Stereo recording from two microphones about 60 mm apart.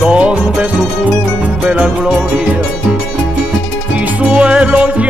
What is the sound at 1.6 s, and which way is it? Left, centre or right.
Music, centre.